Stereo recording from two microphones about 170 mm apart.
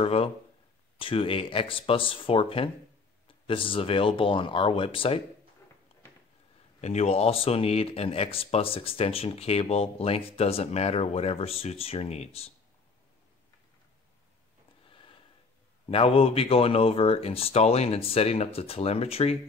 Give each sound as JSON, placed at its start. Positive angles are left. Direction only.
{"t": 0.0, "sound": "speech", "side_deg": 35}
{"t": 6.8, "sound": "speech", "side_deg": 40}
{"t": 14.9, "sound": "a sound", "side_deg": 30}
{"t": 15.9, "sound": "speech", "side_deg": 35}